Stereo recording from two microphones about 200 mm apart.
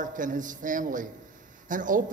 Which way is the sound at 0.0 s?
40° right (ahead or behind).